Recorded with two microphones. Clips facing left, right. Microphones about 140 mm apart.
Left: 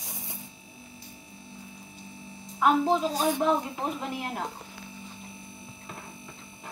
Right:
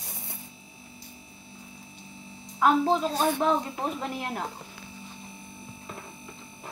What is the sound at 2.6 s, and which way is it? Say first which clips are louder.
Speech: right 1 dB; 15° left (ahead or behind).